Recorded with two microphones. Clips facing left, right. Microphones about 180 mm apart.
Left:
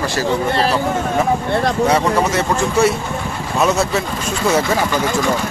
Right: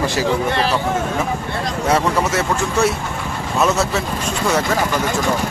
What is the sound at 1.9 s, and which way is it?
Speech, centre (ahead or behind).